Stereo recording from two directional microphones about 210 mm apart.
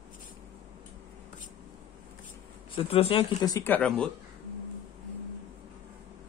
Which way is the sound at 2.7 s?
25° left (ahead or behind).